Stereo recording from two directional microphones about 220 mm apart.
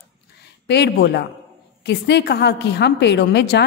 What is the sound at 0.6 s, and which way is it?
A woman's voice, 50° left (ahead or behind).